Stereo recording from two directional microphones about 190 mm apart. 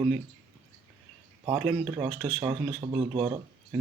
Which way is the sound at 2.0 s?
25° right (ahead or behind).